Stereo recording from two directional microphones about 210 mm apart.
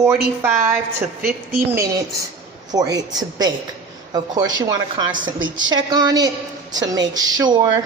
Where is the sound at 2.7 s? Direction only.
20° right (ahead or behind).